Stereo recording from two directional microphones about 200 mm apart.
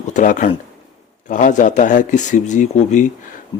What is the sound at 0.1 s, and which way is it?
Speech, 40° left (ahead or behind).